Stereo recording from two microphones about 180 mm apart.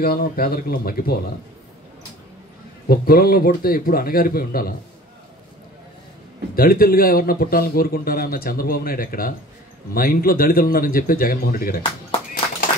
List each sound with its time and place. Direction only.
0.0 s a man's voice: 55° left (ahead or behind)
2.9 s a man's voice: 55° left (ahead or behind)
6.5 s a man's voice: 55° left (ahead or behind)